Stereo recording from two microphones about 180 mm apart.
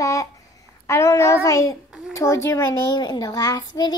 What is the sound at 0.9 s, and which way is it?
A child's voice, 15° left (ahead or behind).